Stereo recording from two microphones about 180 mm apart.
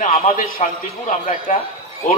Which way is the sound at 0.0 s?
45° left (ahead or behind).